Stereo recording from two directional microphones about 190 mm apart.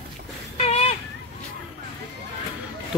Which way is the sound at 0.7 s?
35° left (ahead or behind).